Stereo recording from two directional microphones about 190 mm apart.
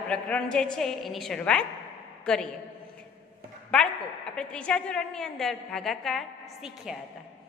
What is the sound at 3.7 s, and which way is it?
A woman's voice, 5° left (ahead or behind).